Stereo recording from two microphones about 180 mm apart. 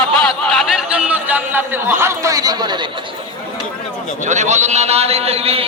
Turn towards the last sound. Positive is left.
turn(degrees=-35)  # may be behind; listen again after turning